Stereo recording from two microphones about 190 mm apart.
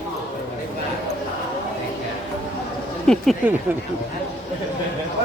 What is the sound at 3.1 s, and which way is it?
Speech, 5° left (ahead or behind).